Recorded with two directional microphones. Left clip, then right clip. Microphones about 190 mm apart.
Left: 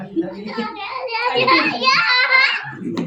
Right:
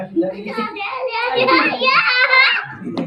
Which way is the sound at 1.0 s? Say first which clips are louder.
Even; 30° left (ahead or behind).